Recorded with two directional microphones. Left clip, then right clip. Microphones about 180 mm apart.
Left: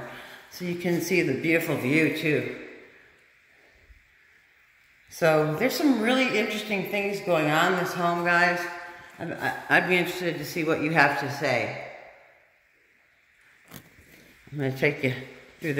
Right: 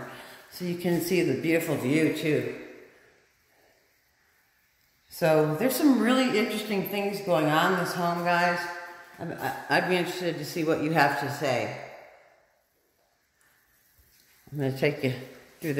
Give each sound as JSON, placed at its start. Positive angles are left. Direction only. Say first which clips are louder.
{"t": 0.1, "sound": "a sound", "louder": "left 2 dB", "side_deg": -5}
{"t": 0.6, "sound": "speech", "louder": "left 1 dB", "side_deg": -10}
{"t": 5.2, "sound": "a woman's voice", "louder": "left 1 dB", "side_deg": -5}
{"t": 14.6, "sound": "speech", "louder": "left 2 dB", "side_deg": -10}